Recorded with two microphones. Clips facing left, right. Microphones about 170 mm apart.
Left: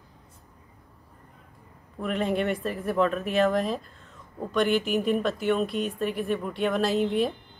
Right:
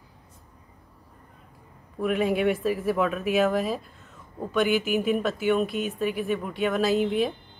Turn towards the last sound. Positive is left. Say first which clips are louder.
# right 1 dB
turn(degrees=0)  # may be behind; listen again after turning